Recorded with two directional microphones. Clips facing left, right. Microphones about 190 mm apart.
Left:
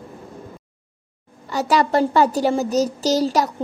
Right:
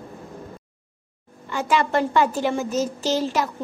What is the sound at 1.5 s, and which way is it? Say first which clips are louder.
A child's voice: left 3 dB; 40° left (ahead or behind).